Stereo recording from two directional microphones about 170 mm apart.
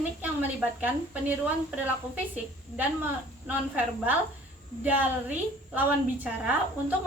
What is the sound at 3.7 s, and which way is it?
Speech, 10° right (ahead or behind).